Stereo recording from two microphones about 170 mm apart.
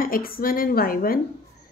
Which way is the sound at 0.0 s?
60° left (ahead or behind).